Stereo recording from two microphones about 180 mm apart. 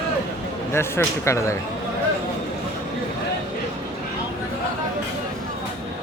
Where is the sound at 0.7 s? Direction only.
15° left (ahead or behind).